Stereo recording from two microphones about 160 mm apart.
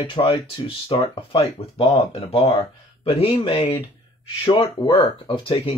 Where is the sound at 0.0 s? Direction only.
35° left (ahead or behind).